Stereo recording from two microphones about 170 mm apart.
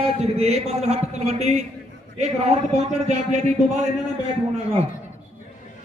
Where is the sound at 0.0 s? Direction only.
40° right (ahead or behind).